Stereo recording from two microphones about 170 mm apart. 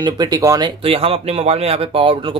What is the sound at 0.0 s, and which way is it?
Speech, 25° right (ahead or behind).